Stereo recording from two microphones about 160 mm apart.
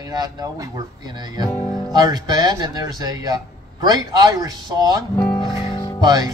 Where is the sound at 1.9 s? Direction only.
25° right (ahead or behind).